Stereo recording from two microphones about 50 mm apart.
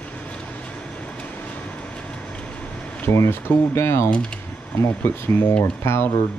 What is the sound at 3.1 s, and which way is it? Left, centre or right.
Speech, left.